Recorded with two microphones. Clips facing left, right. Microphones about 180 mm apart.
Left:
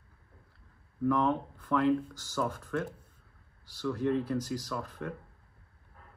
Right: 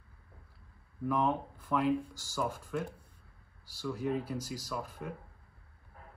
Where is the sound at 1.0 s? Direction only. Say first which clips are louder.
Left 3 dB; 5° right (ahead or behind).